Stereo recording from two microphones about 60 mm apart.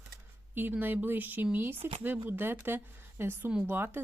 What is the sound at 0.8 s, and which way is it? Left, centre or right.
Speech, right.